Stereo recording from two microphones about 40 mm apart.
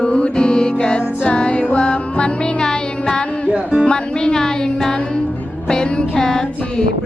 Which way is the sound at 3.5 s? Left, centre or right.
Right.